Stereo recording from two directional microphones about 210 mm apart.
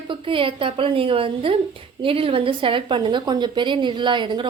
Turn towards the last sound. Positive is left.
turn(degrees=-20)  # may be behind; listen again after turning